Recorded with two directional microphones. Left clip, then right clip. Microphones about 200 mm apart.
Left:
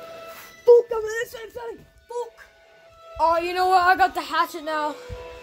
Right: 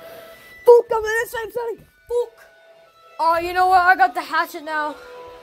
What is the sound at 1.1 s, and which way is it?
Speech, 20° right (ahead or behind).